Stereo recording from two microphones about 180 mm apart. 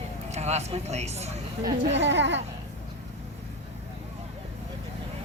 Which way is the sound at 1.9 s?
80° right.